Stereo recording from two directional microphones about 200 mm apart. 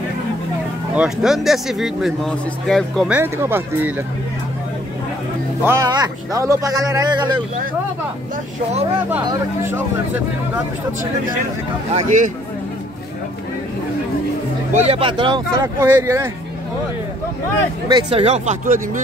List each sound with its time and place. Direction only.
0.9 s speech: 5° right (ahead or behind)
3.2 s speech: 10° right (ahead or behind)
5.6 s speech: 15° right (ahead or behind)
9.2 s speech: 15° right (ahead or behind)
11.9 s speech: 40° right (ahead or behind)
14.7 s speech: 30° right (ahead or behind)
15.6 s speech: 15° right (ahead or behind)
17.9 s speech: 30° right (ahead or behind)